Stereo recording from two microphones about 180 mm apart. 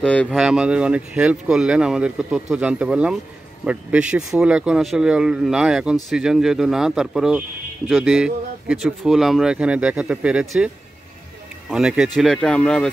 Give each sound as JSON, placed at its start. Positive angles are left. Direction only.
{"t": 0.0, "sound": "speech", "side_deg": 5}
{"t": 0.4, "sound": "speech", "side_deg": -5}
{"t": 11.7, "sound": "speech", "side_deg": -5}